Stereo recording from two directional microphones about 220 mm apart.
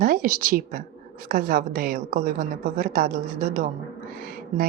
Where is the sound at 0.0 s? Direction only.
40° right (ahead or behind).